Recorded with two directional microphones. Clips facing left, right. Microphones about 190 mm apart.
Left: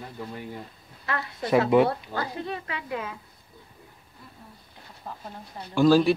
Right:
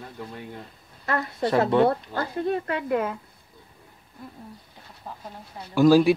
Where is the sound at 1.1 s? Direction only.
40° right (ahead or behind).